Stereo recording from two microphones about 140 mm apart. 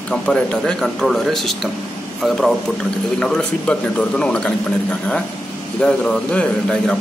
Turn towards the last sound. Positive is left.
turn(degrees=5)  # may be behind; listen again after turning